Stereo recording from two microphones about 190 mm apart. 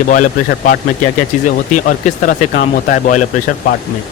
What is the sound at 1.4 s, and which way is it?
Speech, 45° left (ahead or behind).